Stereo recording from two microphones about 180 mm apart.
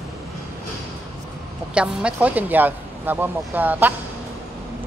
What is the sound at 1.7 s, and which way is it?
Speech, 5° right (ahead or behind).